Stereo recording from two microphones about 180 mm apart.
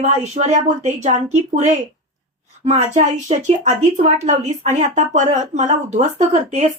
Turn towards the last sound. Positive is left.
turn(degrees=-40)  # may be behind; listen again after turning